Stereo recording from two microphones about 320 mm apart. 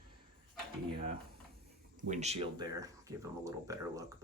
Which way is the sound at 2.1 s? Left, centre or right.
Right.